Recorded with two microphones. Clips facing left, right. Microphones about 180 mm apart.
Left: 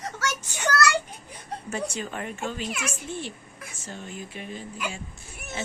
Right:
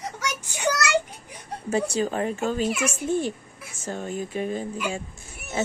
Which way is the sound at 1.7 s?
35° right (ahead or behind).